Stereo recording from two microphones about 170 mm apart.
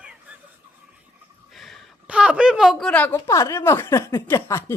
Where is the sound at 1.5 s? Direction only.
Centre (ahead or behind).